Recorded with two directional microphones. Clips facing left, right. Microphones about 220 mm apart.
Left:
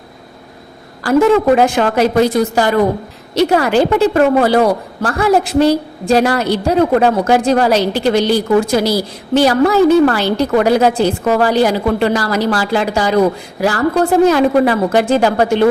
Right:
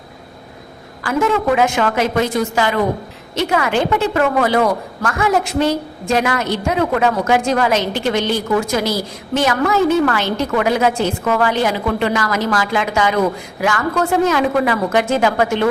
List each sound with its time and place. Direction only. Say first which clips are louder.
1.0 s a woman's voice: left 7 dB; 35° left (ahead or behind)